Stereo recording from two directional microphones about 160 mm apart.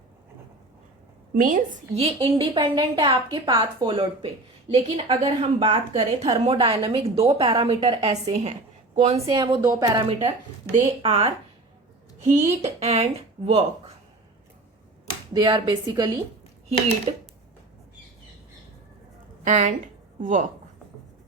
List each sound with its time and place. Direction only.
1.3 s a woman's voice: 55° right (ahead or behind)
2.0 s a woman's voice: 35° right (ahead or behind)
9.2 s a woman's voice: 25° right (ahead or behind)
10.2 s a woman's voice: 40° right (ahead or behind)
15.3 s a woman's voice: 30° right (ahead or behind)
19.5 s a woman's voice: 50° right (ahead or behind)